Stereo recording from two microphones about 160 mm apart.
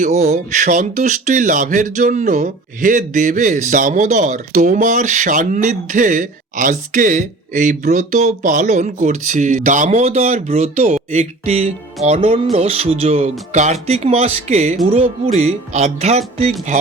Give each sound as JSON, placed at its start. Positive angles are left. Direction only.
{"t": 0.0, "sound": "speech", "side_deg": -45}